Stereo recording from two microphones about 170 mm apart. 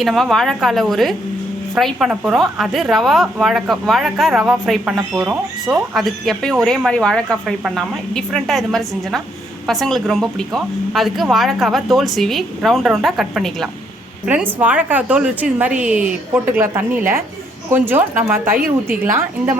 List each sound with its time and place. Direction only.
0.0 s a woman's voice: centre (ahead or behind)